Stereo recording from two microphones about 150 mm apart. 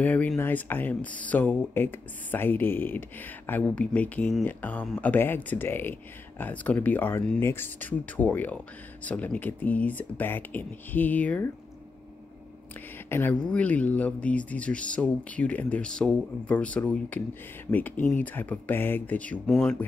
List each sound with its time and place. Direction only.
0.0 s speech: 10° left (ahead or behind)
13.1 s speech: 15° left (ahead or behind)